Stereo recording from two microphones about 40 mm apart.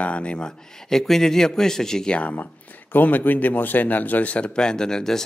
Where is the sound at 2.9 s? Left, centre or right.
Left.